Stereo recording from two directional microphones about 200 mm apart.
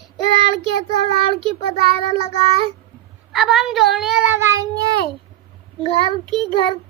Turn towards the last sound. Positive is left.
turn(degrees=-25)  # may be behind; listen again after turning